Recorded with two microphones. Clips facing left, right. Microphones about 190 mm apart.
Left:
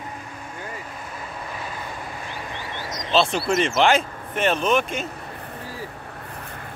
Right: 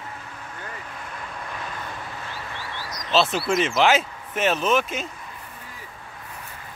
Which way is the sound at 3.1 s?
5° right (ahead or behind).